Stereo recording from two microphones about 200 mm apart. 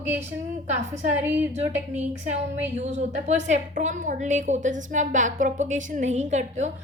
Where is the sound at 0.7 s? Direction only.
35° right (ahead or behind).